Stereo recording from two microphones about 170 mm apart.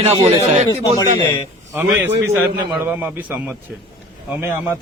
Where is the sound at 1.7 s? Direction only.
10° right (ahead or behind).